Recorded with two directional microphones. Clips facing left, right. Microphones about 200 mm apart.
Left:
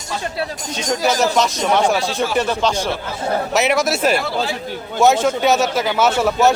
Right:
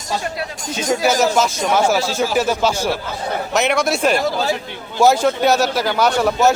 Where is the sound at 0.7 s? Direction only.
5° right (ahead or behind).